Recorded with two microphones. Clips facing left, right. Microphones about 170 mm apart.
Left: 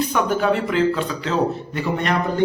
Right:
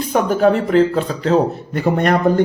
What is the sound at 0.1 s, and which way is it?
A man's voice, 40° right (ahead or behind).